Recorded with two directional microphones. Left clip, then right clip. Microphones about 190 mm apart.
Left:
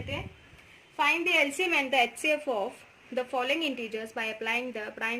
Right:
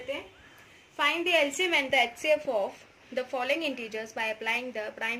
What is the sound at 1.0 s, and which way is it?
A woman's voice, 55° left (ahead or behind).